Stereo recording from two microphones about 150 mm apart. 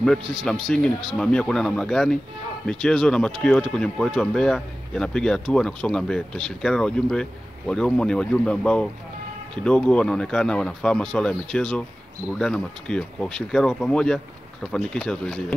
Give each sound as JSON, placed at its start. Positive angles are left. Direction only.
{"t": 0.2, "sound": "a man's voice", "side_deg": -35}
{"t": 0.7, "sound": "speech", "side_deg": 5}